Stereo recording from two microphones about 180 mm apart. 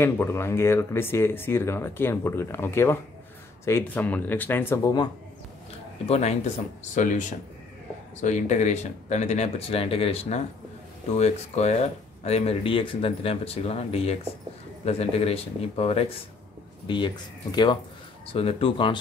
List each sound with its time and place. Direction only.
0.0 s speech: 15° left (ahead or behind)
6.0 s speech: 35° left (ahead or behind)
8.2 s speech: 40° left (ahead or behind)